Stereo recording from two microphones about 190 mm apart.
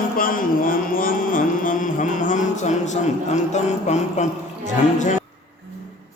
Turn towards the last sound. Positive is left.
turn(degrees=40)  # may be behind; listen again after turning